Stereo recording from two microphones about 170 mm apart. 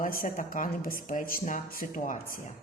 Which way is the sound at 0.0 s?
55° left (ahead or behind).